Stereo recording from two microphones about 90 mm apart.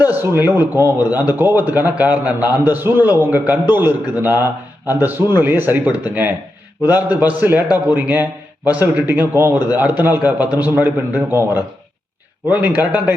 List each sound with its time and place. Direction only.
0.0 s a man's voice: 25° right (ahead or behind)